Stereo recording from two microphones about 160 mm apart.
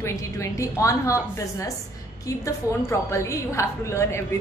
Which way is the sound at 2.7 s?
15° left (ahead or behind).